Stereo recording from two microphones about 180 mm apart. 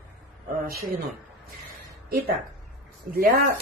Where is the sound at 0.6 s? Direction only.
60° right (ahead or behind).